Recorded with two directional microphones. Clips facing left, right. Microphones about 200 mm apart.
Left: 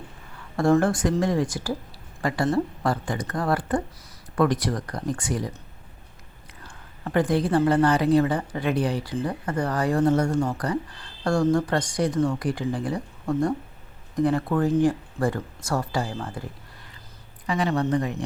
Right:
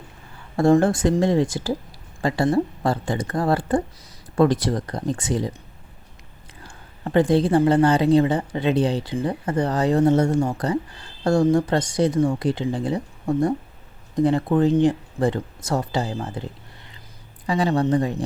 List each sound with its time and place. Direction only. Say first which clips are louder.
0.5 s a woman's voice: right 3 dB; 25° right (ahead or behind)
6.7 s a woman's voice: right 3 dB; 25° right (ahead or behind)